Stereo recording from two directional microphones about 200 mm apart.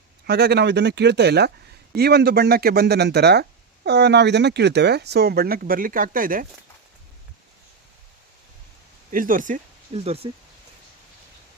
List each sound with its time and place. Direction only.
0.3 s speech: 55° right (ahead or behind)
9.1 s speech: 40° right (ahead or behind)